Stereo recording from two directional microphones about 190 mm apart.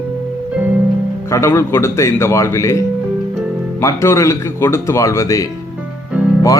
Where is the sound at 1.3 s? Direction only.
15° left (ahead or behind).